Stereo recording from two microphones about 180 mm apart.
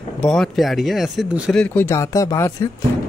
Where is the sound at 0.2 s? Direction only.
Centre (ahead or behind).